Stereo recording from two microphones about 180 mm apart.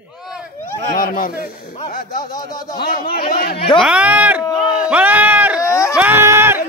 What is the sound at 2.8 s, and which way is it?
Speech, 60° left (ahead or behind).